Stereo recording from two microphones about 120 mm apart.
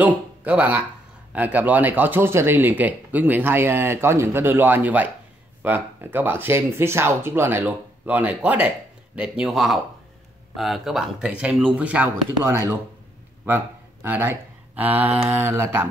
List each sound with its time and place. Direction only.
0.0 s speech: 15° right (ahead or behind)
14.0 s speech: 20° right (ahead or behind)